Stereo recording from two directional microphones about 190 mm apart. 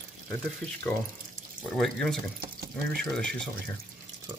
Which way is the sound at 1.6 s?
Centre (ahead or behind).